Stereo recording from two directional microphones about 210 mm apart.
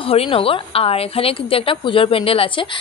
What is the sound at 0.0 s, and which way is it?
A woman's voice, 25° left (ahead or behind).